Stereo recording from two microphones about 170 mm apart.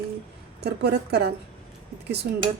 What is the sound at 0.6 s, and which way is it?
Speech, 75° right (ahead or behind).